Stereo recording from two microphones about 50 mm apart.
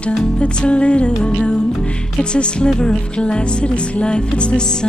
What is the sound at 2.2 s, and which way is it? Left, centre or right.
Speech, centre.